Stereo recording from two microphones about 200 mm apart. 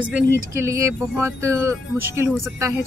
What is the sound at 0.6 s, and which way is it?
Speech, 10° right (ahead or behind).